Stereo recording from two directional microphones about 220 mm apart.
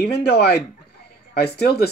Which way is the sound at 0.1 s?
50° left (ahead or behind).